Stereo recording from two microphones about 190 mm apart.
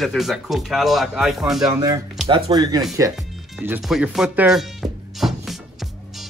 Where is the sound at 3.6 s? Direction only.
5° right (ahead or behind).